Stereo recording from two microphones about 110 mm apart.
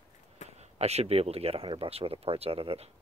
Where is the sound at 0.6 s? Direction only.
75° right (ahead or behind).